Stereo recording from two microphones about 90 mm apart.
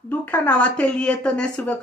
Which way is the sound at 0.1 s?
20° left (ahead or behind).